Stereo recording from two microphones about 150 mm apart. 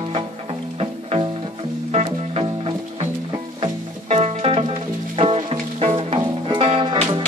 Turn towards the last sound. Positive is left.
turn(degrees=-35)  # may be behind; listen again after turning